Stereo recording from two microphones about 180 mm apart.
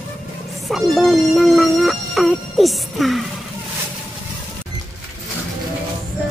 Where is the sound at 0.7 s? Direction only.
Centre (ahead or behind).